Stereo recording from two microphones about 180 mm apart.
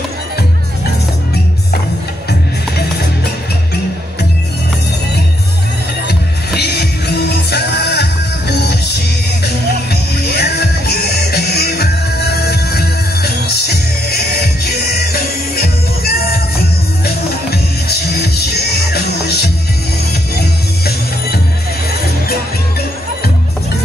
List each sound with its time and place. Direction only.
6.0 s music: 65° left (ahead or behind)